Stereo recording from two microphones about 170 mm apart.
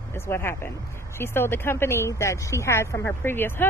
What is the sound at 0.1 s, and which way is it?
Speech, 15° left (ahead or behind).